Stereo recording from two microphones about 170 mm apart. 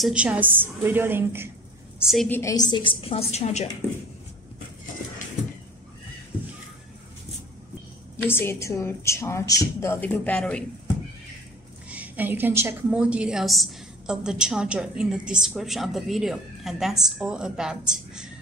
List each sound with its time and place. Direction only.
0.0 s a woman's voice: 5° right (ahead or behind)
2.0 s a woman's voice: centre (ahead or behind)
2.2 s a woman's voice: 10° left (ahead or behind)
2.5 s a woman's voice: 25° left (ahead or behind); by 3.6 s 40° left (ahead or behind)
8.3 s a woman's voice: 15° left (ahead or behind)
11.9 s a woman's voice: 10° right (ahead or behind)